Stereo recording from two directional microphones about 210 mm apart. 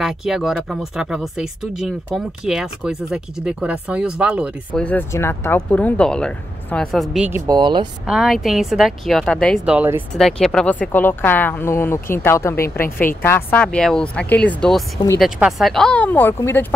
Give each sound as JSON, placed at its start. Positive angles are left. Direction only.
{"t": 0.0, "sound": "speech", "side_deg": 0}
{"t": 4.8, "sound": "speech", "side_deg": 10}
{"t": 8.1, "sound": "a woman's voice", "side_deg": 0}